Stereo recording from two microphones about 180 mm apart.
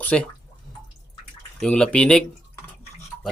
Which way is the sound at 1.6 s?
5° left (ahead or behind).